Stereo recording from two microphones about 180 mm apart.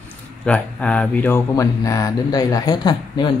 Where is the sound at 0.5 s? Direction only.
5° left (ahead or behind).